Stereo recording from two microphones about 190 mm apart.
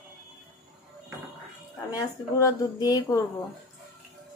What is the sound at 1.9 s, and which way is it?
A woman's voice, 20° left (ahead or behind).